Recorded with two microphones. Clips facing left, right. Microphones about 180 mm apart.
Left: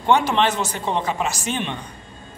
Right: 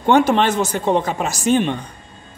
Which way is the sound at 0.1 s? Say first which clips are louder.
Right 4 dB; 45° right (ahead or behind).